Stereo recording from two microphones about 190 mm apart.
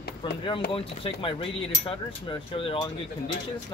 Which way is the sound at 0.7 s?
30° left (ahead or behind).